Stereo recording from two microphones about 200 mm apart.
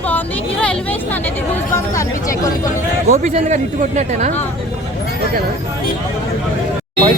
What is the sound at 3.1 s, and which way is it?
Speech, 35° right (ahead or behind).